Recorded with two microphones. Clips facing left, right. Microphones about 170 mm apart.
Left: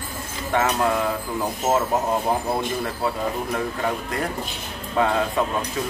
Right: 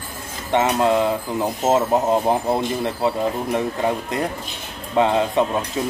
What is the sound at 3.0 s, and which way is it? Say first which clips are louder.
Speech: right 5 dB; 20° right (ahead or behind).